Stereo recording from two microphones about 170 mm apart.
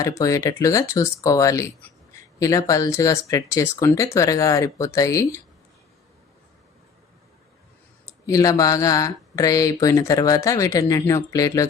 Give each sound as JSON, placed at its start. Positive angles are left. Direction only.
{"t": 0.0, "sound": "speech", "side_deg": 20}
{"t": 8.0, "sound": "speech", "side_deg": 20}